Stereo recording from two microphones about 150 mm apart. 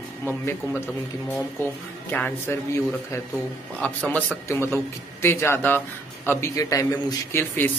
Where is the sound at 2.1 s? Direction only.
10° left (ahead or behind).